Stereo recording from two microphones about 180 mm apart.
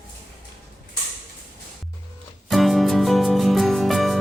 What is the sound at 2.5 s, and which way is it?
Music, centre (ahead or behind).